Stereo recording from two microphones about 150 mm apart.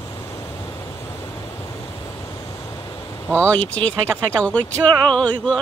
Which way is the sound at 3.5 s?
10° left (ahead or behind).